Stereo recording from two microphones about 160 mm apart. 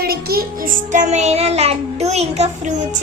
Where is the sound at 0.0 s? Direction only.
75° right (ahead or behind).